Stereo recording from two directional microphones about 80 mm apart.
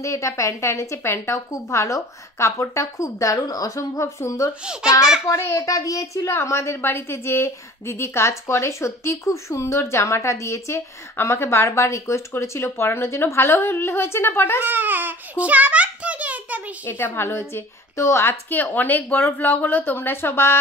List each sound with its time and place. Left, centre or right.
0.0 s a woman's voice: left
14.6 s babbling: right
16.8 s a woman's voice: left